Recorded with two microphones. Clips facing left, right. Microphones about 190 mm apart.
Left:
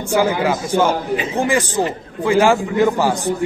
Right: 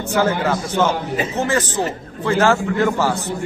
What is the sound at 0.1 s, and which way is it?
A man's voice, 10° left (ahead or behind).